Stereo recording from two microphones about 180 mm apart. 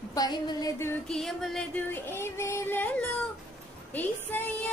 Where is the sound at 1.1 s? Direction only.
Centre (ahead or behind).